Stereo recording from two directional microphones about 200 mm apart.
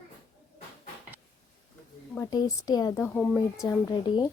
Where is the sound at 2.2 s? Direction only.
20° left (ahead or behind).